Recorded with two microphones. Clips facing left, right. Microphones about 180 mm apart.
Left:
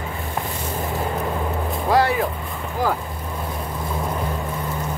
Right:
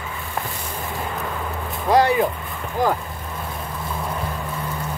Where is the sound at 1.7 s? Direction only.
Centre (ahead or behind).